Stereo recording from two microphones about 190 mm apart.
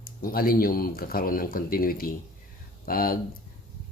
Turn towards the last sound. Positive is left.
turn(degrees=50)  # may be behind; listen again after turning